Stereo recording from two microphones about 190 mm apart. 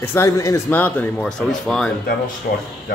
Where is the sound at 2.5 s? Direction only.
55° left (ahead or behind).